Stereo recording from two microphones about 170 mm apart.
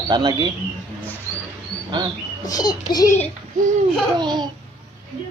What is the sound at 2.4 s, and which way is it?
Speech, 20° left (ahead or behind).